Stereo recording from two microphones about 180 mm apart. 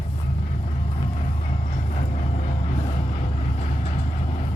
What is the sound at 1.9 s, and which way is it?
Train, 40° left (ahead or behind).